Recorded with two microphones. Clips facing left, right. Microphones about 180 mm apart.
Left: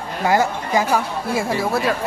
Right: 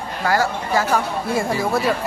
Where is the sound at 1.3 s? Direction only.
Centre (ahead or behind).